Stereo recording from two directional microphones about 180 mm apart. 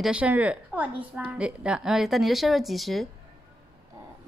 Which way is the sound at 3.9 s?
15° right (ahead or behind).